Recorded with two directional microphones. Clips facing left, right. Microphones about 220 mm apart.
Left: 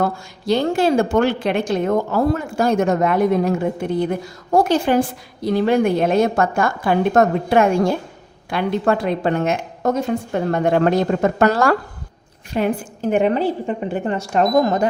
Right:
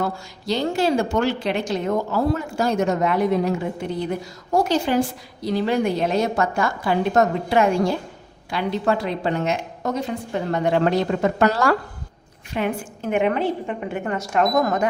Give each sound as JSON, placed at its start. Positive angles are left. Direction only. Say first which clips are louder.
{"t": 0.0, "sound": "a woman's voice", "louder": "left 4 dB", "side_deg": 55}
{"t": 12.5, "sound": "a woman's voice", "louder": "left 4 dB", "side_deg": 40}